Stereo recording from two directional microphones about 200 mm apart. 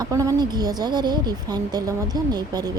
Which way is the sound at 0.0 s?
15° right (ahead or behind).